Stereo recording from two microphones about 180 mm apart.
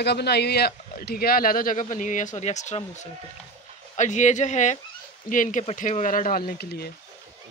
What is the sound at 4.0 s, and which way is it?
Speech, 40° left (ahead or behind).